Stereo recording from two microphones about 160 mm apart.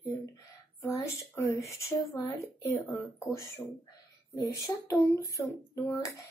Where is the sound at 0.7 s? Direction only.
20° left (ahead or behind).